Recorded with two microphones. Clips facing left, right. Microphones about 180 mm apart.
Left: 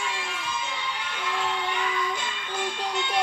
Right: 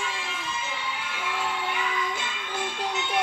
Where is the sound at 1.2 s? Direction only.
5° right (ahead or behind).